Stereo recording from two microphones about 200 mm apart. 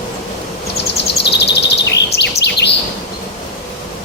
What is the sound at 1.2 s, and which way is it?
Bird vocalization, 55° left (ahead or behind).